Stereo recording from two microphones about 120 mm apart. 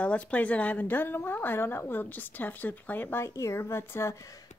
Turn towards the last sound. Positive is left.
turn(degrees=25)  # may be behind; listen again after turning